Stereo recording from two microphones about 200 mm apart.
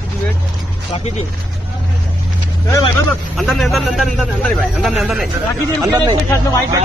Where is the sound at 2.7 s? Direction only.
15° left (ahead or behind).